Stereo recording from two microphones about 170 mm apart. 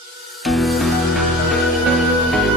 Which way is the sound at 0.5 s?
Centre (ahead or behind).